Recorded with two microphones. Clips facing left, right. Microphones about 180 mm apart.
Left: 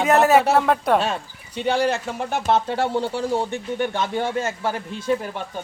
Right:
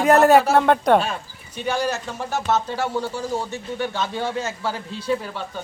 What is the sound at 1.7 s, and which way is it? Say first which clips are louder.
Speech: left 3 dB; 60° left (ahead or behind).